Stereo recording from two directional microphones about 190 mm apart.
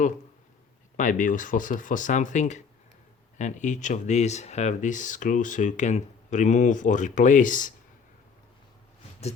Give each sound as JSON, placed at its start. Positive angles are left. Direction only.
{"t": 0.9, "sound": "speech", "side_deg": 45}